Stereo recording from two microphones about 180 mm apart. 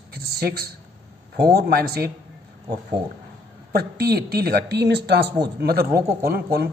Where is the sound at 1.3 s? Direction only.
60° right (ahead or behind).